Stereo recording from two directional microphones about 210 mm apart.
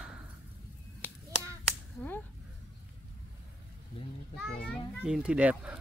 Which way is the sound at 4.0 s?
25° left (ahead or behind).